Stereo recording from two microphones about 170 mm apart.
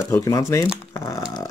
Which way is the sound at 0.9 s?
15° left (ahead or behind).